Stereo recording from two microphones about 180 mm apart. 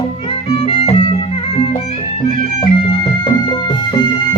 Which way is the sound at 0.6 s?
30° left (ahead or behind).